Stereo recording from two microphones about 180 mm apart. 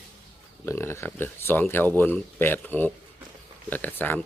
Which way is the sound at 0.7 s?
15° left (ahead or behind).